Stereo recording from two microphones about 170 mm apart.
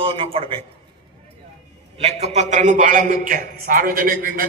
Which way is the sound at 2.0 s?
40° right (ahead or behind).